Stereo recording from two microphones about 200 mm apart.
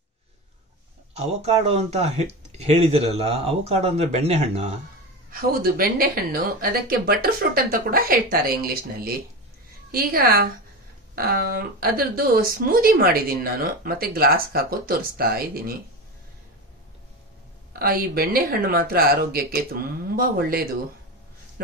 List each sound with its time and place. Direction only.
1.1 s speech: 30° right (ahead or behind)
5.3 s a woman's voice: 45° right (ahead or behind)
17.7 s a woman's voice: 50° right (ahead or behind)